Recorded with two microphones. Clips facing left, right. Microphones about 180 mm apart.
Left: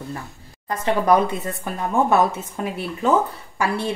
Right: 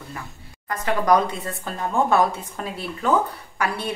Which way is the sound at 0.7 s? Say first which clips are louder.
Left 2 dB; 25° left (ahead or behind).